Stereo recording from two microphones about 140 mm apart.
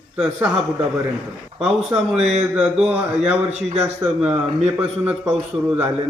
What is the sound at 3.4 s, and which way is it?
Speech, 55° right (ahead or behind).